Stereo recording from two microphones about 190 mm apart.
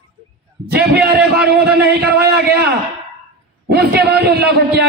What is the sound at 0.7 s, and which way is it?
A man's voice, 55° right (ahead or behind).